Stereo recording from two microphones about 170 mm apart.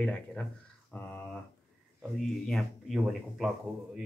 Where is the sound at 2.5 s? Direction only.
Centre (ahead or behind).